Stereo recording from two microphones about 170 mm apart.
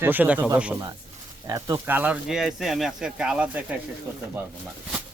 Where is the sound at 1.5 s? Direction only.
20° right (ahead or behind).